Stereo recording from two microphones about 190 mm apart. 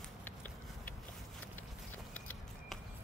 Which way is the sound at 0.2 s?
10° left (ahead or behind).